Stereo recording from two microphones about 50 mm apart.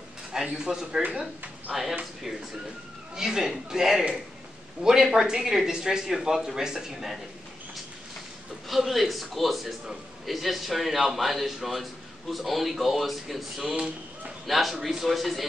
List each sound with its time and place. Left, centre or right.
0.5 s a man's voice: centre
3.2 s speech: centre
8.6 s a man's voice: centre
13.7 s speech: right
14.4 s a man's voice: centre